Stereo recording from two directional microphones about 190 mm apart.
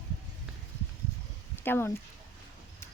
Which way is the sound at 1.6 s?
10° left (ahead or behind).